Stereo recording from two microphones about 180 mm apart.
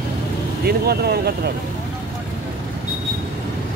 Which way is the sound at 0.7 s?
60° right (ahead or behind).